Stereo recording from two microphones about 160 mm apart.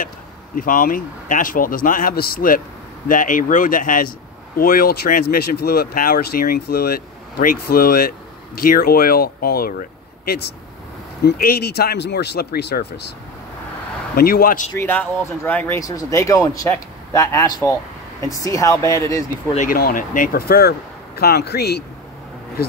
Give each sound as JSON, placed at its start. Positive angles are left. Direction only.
{"t": 0.6, "sound": "speech", "side_deg": 60}
{"t": 14.1, "sound": "speech", "side_deg": 65}
{"t": 14.8, "sound": "speech", "side_deg": 10}
{"t": 19.5, "sound": "speech", "side_deg": 55}
{"t": 21.2, "sound": "speech", "side_deg": 85}
{"t": 22.6, "sound": "speech", "side_deg": 75}